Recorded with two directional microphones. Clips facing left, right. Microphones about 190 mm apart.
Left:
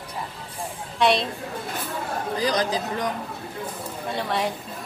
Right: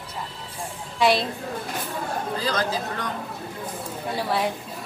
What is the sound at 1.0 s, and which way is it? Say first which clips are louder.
Speech: even; centre (ahead or behind).